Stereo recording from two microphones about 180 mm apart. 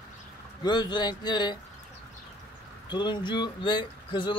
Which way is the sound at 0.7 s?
25° left (ahead or behind).